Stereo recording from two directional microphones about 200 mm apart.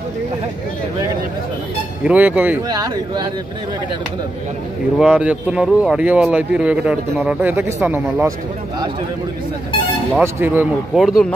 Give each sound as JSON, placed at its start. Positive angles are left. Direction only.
{"t": 2.0, "sound": "speech", "side_deg": -10}
{"t": 2.7, "sound": "speech", "side_deg": -20}
{"t": 4.9, "sound": "speech", "side_deg": -5}
{"t": 10.1, "sound": "speech", "side_deg": -10}